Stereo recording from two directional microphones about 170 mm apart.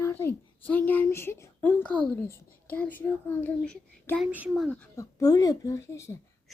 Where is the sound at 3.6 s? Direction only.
5° left (ahead or behind).